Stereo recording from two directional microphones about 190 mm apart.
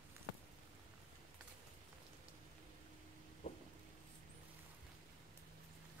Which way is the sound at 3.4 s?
35° left (ahead or behind).